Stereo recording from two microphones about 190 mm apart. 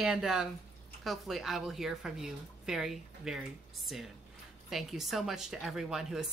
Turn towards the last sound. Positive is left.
turn(degrees=0)  # may be behind; listen again after turning